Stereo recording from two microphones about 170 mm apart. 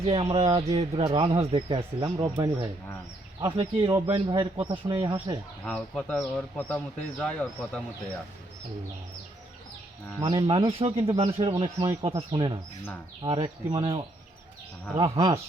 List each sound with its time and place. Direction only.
0.0 s speech: 35° right (ahead or behind)
5.6 s speech: centre (ahead or behind)
10.2 s speech: 20° right (ahead or behind)
10.4 s speech: 30° right (ahead or behind)
14.9 s speech: 25° right (ahead or behind)